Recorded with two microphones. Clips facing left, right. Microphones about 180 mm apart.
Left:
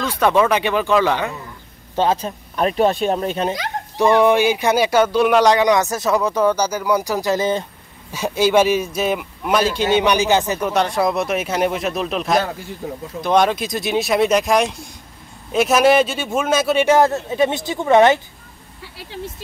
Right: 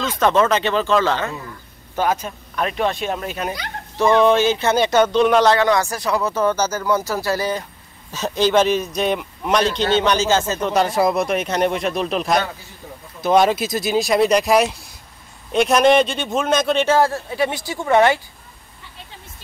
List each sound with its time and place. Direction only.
0.0 s speech: 10° left (ahead or behind)
2.0 s speech: 30° left (ahead or behind)
3.9 s speech: 15° left (ahead or behind)
8.1 s speech: 10° left (ahead or behind)
10.7 s speech: centre (ahead or behind)
12.8 s speech: 55° left (ahead or behind)
13.2 s speech: 5° right (ahead or behind); by 18.2 s 20° left (ahead or behind)
18.8 s a sound: 90° left